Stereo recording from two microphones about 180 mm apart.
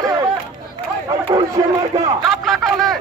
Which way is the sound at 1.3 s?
20° right (ahead or behind).